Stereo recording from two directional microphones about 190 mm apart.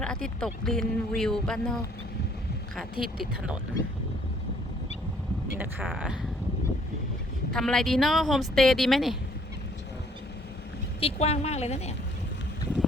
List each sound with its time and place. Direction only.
0.0 s speech: 5° left (ahead or behind)
2.9 s speech: 50° right (ahead or behind)
5.5 s speech: 10° right (ahead or behind)
7.5 s speech: centre (ahead or behind)
11.0 s a woman's voice: 35° left (ahead or behind)